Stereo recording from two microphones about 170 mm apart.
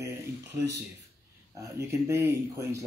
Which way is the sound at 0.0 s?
20° right (ahead or behind).